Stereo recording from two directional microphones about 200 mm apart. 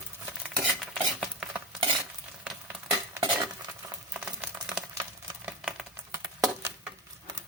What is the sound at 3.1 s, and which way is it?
Stir, 20° right (ahead or behind).